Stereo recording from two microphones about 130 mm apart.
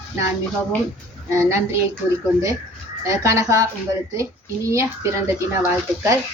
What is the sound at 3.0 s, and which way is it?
Speech, 25° right (ahead or behind).